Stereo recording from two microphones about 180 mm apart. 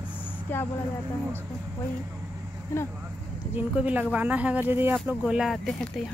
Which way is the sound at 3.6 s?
10° right (ahead or behind).